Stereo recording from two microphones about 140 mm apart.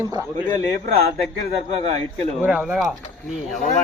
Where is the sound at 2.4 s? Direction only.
10° right (ahead or behind).